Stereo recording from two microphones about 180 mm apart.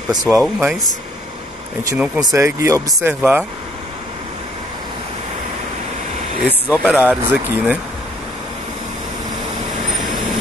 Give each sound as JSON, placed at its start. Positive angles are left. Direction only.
{"t": 0.1, "sound": "speech", "side_deg": -20}
{"t": 0.4, "sound": "speech", "side_deg": 0}
{"t": 2.1, "sound": "speech", "side_deg": -15}
{"t": 6.7, "sound": "speech", "side_deg": -5}